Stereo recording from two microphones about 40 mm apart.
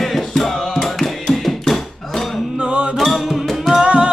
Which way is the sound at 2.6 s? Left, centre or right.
Right.